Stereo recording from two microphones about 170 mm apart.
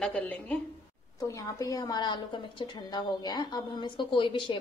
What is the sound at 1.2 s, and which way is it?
A woman's voice, 20° left (ahead or behind).